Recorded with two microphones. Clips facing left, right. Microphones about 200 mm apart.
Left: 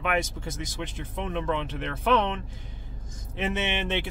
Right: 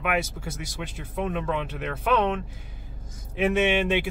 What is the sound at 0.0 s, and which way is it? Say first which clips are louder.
Speech: right 1 dB; 10° right (ahead or behind).